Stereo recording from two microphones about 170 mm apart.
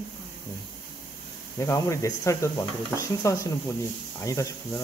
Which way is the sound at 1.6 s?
15° left (ahead or behind).